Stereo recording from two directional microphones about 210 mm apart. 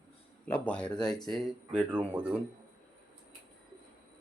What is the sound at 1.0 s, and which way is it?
Speech, 20° left (ahead or behind).